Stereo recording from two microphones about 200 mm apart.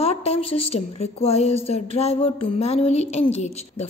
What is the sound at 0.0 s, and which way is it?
A woman's voice, 30° left (ahead or behind).